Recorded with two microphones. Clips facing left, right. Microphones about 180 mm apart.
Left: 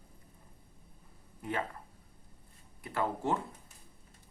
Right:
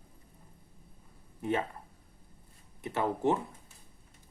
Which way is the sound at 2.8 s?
20° right (ahead or behind).